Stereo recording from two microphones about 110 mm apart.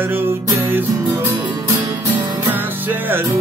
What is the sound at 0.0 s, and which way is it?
Music, 20° right (ahead or behind).